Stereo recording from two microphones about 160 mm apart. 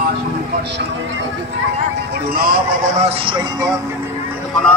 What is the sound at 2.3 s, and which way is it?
Speech, 65° right (ahead or behind).